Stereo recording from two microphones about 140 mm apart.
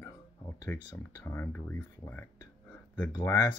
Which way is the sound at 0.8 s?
30° left (ahead or behind).